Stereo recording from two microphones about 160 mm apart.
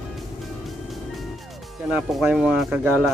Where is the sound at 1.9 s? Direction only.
5° right (ahead or behind).